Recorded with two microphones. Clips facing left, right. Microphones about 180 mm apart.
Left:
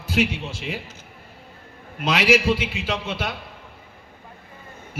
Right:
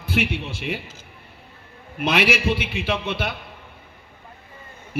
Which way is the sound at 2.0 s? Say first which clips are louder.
Left 2 dB; 60° right (ahead or behind).